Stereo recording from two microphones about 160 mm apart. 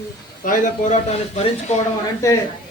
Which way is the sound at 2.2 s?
20° left (ahead or behind).